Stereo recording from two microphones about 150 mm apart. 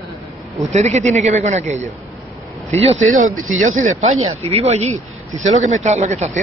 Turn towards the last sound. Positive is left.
turn(degrees=-50)  # may be behind; listen again after turning